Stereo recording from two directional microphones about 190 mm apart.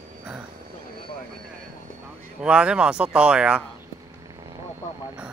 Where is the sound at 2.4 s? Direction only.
5° right (ahead or behind).